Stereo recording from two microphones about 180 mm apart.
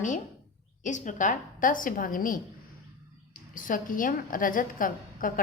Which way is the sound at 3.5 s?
50° left (ahead or behind).